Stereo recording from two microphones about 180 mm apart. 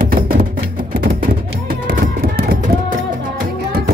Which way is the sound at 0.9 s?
50° right (ahead or behind).